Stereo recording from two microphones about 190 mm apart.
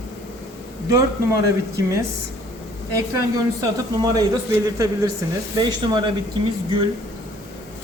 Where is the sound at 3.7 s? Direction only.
20° right (ahead or behind).